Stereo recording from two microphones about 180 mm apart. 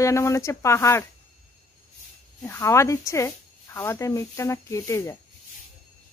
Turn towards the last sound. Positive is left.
turn(degrees=15)  # may be behind; listen again after turning